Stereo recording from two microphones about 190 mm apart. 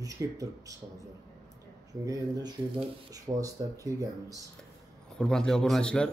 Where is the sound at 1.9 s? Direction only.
20° right (ahead or behind).